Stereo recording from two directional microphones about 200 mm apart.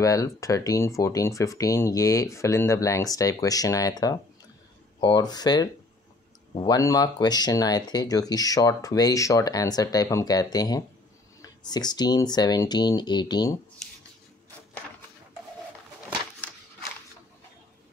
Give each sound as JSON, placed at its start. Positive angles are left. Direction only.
{"t": 0.0, "sound": "speech", "side_deg": 15}